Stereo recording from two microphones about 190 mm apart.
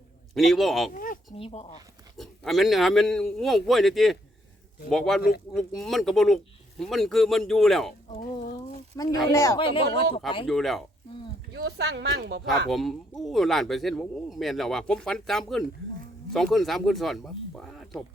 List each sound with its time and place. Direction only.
0.3 s speech: centre (ahead or behind)
0.9 s a sound: 45° left (ahead or behind)
1.4 s speech: 30° left (ahead or behind)
2.1 s speech: centre (ahead or behind)
9.0 s speech: 15° left (ahead or behind)
9.6 s speech: 25° left (ahead or behind)
10.4 s speech: centre (ahead or behind)
11.5 s speech: 60° right (ahead or behind)
12.7 s speech: centre (ahead or behind)